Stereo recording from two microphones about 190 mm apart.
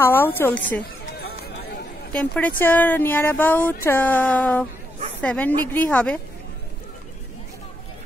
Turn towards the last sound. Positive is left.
turn(degrees=5)  # may be behind; listen again after turning